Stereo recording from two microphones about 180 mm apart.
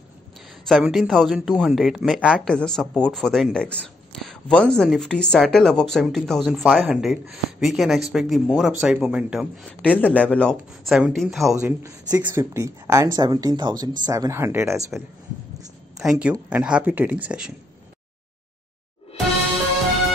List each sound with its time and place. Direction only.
0.7 s speech: centre (ahead or behind)
16.0 s speech: 5° right (ahead or behind)